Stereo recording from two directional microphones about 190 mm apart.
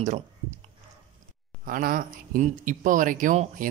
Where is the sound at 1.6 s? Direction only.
45° right (ahead or behind).